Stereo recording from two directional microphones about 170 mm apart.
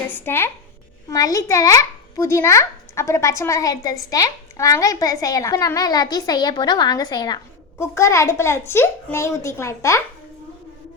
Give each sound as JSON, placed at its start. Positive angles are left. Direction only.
{"t": 0.1, "sound": "a woman's voice", "side_deg": 15}